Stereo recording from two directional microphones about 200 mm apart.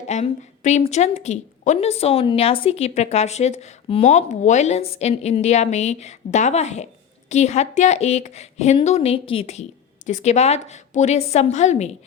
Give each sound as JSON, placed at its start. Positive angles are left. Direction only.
{"t": 0.1, "sound": "speech", "side_deg": 35}